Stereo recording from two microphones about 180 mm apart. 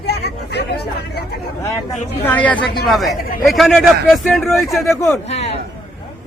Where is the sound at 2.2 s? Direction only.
10° left (ahead or behind).